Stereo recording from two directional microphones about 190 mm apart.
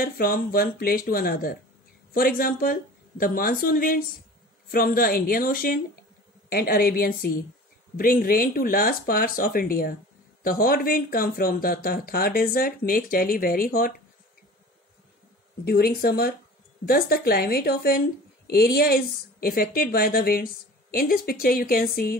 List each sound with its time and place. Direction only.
0.0 s speech: 50° left (ahead or behind)
15.6 s a woman's voice: 55° left (ahead or behind)